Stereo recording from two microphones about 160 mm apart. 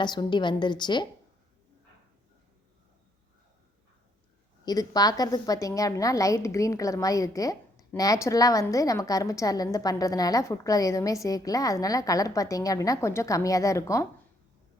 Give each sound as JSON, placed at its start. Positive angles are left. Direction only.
{"t": 0.0, "sound": "a woman's voice", "side_deg": 25}
{"t": 4.6, "sound": "a woman's voice", "side_deg": 25}